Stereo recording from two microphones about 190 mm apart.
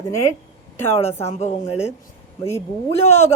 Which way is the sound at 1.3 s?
35° left (ahead or behind).